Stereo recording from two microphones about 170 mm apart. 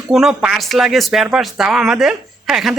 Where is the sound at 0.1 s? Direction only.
5° right (ahead or behind).